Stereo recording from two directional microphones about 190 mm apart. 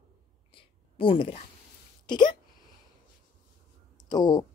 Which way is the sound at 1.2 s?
30° left (ahead or behind).